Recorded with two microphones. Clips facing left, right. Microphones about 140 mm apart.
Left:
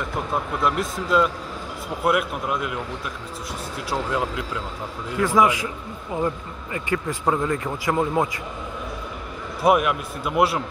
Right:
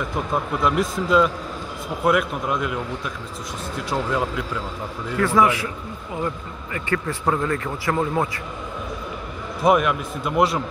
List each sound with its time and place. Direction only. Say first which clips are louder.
0.7 s a man's voice: right 3 dB; centre (ahead or behind)
3.9 s a man's voice: right 1 dB; centre (ahead or behind)
5.1 s speech: even; 15° left (ahead or behind)
9.6 s a man's voice: right 1 dB; 5° left (ahead or behind)